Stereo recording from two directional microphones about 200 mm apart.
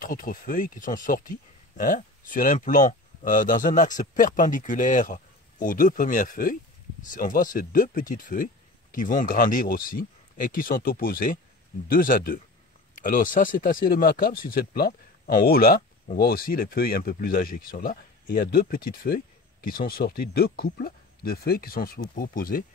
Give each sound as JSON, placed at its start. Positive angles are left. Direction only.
{"t": 0.0, "sound": "speech", "side_deg": 45}